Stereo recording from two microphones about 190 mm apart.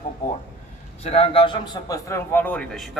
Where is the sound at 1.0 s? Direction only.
30° left (ahead or behind).